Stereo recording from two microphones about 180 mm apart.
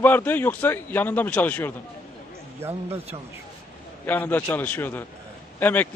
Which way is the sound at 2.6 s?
35° right (ahead or behind).